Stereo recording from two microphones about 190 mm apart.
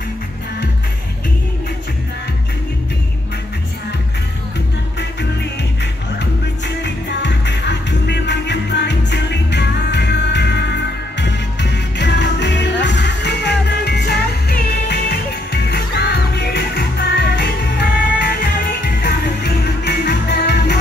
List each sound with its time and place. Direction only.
6.8 s music: 65° left (ahead or behind)